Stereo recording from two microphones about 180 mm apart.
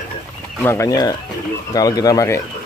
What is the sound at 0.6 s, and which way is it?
Speech, 15° left (ahead or behind).